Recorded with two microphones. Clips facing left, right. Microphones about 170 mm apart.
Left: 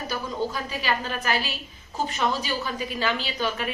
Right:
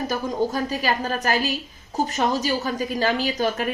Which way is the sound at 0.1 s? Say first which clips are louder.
Right 2 dB; 45° right (ahead or behind).